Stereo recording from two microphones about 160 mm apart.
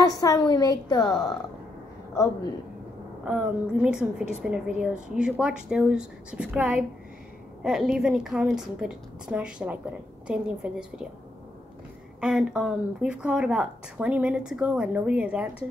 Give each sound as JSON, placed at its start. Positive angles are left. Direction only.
{"t": 0.0, "sound": "a woman's voice", "side_deg": 20}
{"t": 3.3, "sound": "a woman's voice", "side_deg": -5}
{"t": 12.2, "sound": "speech", "side_deg": -5}